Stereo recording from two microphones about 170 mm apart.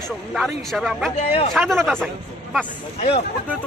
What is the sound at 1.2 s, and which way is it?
Speech, 40° left (ahead or behind).